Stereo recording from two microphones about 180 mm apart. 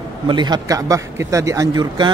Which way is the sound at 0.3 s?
25° right (ahead or behind).